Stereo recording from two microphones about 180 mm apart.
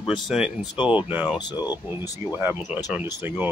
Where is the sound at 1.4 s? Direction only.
25° left (ahead or behind).